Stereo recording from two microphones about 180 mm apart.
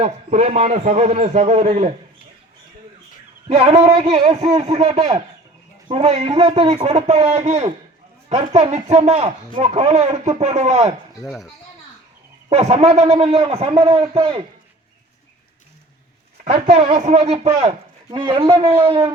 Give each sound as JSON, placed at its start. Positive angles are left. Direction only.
{"t": 0.0, "sound": "speech", "side_deg": -40}
{"t": 3.5, "sound": "speech", "side_deg": -35}
{"t": 5.9, "sound": "speech", "side_deg": -40}
{"t": 11.3, "sound": "speech", "side_deg": 0}
{"t": 12.5, "sound": "speech", "side_deg": -35}
{"t": 16.4, "sound": "a man's voice", "side_deg": -40}